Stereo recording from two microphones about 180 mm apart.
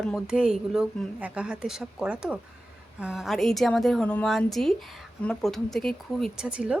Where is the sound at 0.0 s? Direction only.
Centre (ahead or behind).